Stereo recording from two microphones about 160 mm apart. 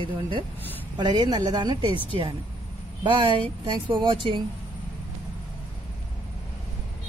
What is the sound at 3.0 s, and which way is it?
Speech, 30° right (ahead or behind).